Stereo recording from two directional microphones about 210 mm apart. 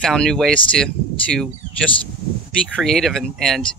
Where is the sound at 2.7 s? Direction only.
Centre (ahead or behind).